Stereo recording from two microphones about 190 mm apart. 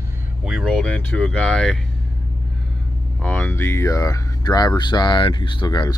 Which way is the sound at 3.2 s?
10° left (ahead or behind).